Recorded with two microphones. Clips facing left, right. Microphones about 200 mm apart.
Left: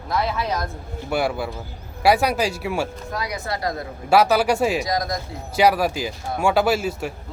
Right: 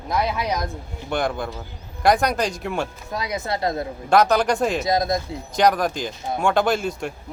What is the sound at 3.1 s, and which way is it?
Speech, 20° right (ahead or behind).